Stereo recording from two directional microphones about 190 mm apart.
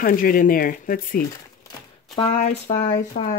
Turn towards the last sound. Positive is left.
turn(degrees=40)  # may be behind; listen again after turning